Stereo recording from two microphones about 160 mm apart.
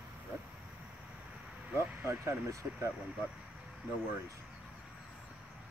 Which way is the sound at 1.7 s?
15° right (ahead or behind).